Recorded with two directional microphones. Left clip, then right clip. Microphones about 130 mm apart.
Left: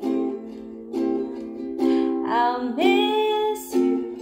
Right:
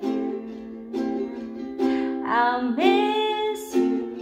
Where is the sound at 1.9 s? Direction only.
25° left (ahead or behind).